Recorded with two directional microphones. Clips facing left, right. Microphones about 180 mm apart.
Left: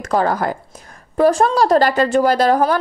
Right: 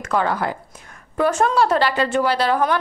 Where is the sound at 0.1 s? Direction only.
40° left (ahead or behind).